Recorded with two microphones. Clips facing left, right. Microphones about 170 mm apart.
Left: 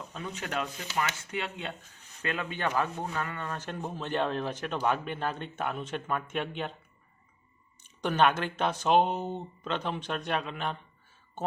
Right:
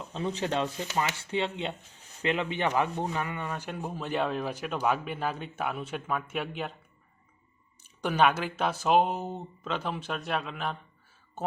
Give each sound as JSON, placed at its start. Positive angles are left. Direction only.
{"t": 0.0, "sound": "speech", "side_deg": -30}
{"t": 7.9, "sound": "speech", "side_deg": -10}